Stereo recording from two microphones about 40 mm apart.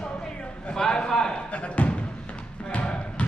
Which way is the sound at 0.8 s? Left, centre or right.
Centre.